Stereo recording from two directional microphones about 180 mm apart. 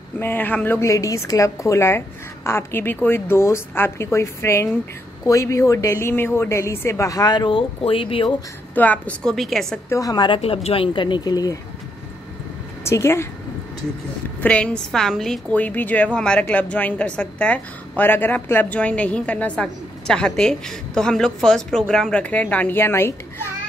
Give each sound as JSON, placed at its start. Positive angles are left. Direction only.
{"t": 0.2, "sound": "a woman's voice", "side_deg": 10}
{"t": 8.7, "sound": "a woman's voice", "side_deg": 10}
{"t": 9.8, "sound": "speech", "side_deg": 20}
{"t": 12.8, "sound": "a woman's voice", "side_deg": 15}
{"t": 14.4, "sound": "a woman's voice", "side_deg": 5}